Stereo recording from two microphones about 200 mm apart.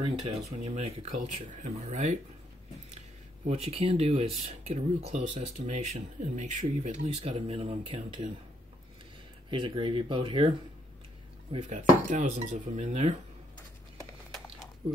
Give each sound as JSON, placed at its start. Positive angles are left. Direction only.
{"t": 0.0, "sound": "speech", "side_deg": -30}
{"t": 3.4, "sound": "speech", "side_deg": -30}
{"t": 9.5, "sound": "speech", "side_deg": -25}
{"t": 11.5, "sound": "speech", "side_deg": -35}